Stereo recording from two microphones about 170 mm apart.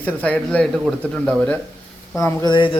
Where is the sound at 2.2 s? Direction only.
25° left (ahead or behind).